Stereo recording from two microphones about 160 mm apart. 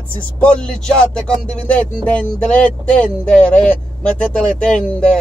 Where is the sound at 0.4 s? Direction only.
5° left (ahead or behind).